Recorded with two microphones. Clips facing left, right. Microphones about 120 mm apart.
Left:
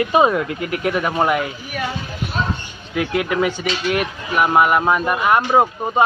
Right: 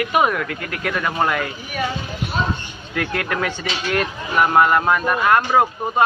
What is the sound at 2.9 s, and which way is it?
Speech, 15° left (ahead or behind).